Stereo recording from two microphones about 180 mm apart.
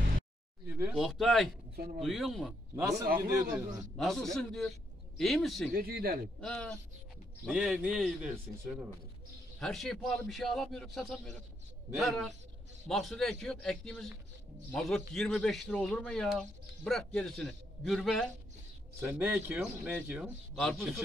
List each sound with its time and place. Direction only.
0.7 s speech: 10° right (ahead or behind)
2.7 s speech: 15° right (ahead or behind)
3.9 s speech: centre (ahead or behind)
5.8 s a man's voice: 55° right (ahead or behind)
6.4 s speech: 5° left (ahead or behind)
18.9 s speech: 10° right (ahead or behind)